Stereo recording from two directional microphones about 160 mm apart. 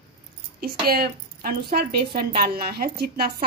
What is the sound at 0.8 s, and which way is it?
A woman's voice, 70° right (ahead or behind).